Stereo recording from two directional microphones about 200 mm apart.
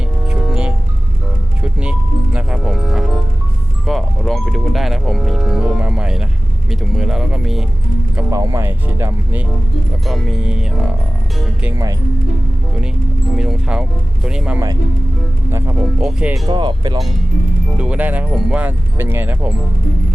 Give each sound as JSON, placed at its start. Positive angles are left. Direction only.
{"t": 0.3, "sound": "music", "side_deg": -5}
{"t": 8.1, "sound": "a sound", "side_deg": -15}
{"t": 10.1, "sound": "speech", "side_deg": -5}
{"t": 11.6, "sound": "speech", "side_deg": -15}
{"t": 13.3, "sound": "speech", "side_deg": -5}
{"t": 16.5, "sound": "speech", "side_deg": -25}
{"t": 17.7, "sound": "speech", "side_deg": -5}